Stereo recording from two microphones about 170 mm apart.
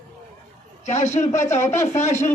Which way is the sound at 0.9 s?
40° left (ahead or behind).